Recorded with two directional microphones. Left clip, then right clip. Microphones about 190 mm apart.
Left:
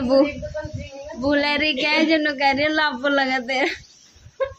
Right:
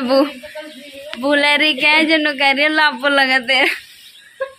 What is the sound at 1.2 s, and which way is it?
Speech, 25° right (ahead or behind).